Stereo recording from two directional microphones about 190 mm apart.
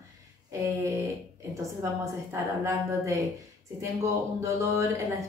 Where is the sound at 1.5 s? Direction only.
15° right (ahead or behind).